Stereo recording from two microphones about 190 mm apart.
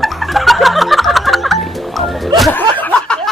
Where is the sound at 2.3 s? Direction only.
5° left (ahead or behind).